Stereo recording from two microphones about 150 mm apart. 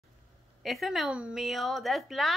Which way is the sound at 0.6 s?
Centre (ahead or behind).